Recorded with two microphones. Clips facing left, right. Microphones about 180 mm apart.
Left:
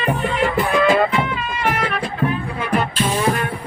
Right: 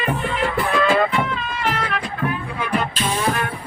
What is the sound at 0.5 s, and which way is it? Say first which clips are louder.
Music: left 2 dB; 20° left (ahead or behind).